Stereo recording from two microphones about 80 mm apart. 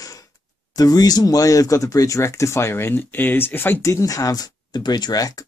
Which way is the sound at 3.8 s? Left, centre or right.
Left.